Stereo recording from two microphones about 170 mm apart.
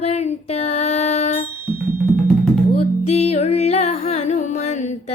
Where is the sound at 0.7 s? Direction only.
40° left (ahead or behind).